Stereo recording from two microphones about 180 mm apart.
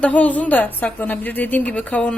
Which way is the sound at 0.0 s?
10° left (ahead or behind).